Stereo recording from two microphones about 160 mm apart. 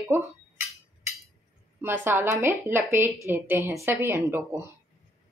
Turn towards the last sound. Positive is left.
turn(degrees=-15)  # may be behind; listen again after turning